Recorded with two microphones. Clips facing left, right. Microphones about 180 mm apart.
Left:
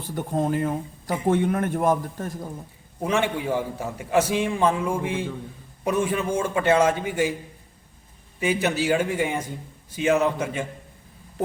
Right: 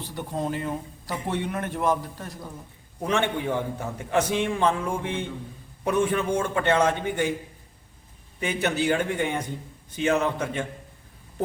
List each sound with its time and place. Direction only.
0.0 s speech: 50° left (ahead or behind)
3.0 s a man's voice: 5° left (ahead or behind)
8.4 s a man's voice: 5° left (ahead or behind)